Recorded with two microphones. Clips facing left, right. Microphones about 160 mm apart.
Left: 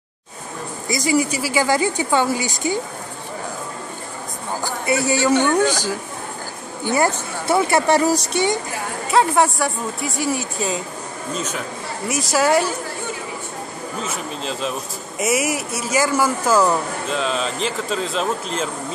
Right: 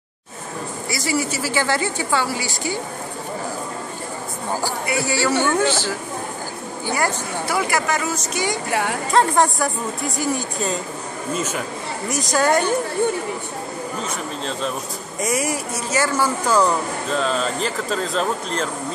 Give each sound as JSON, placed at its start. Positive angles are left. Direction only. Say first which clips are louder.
{"t": 0.8, "sound": "speech", "louder": "left 5 dB", "side_deg": 20}
{"t": 4.8, "sound": "speech", "louder": "left 5 dB", "side_deg": 20}
{"t": 9.1, "sound": "speech", "louder": "left 1 dB", "side_deg": 5}
{"t": 14.0, "sound": "speech", "louder": "even", "side_deg": 5}